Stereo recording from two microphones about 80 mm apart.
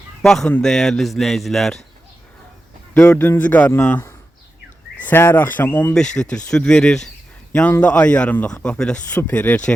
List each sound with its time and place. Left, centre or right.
0.2 s speech: centre
2.9 s speech: centre
4.9 s speech: left
5.9 s speech: centre